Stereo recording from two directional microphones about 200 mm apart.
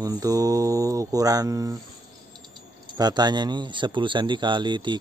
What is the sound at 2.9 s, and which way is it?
Speech, 20° right (ahead or behind).